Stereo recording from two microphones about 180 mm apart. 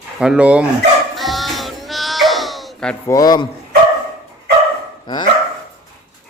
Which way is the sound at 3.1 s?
20° left (ahead or behind).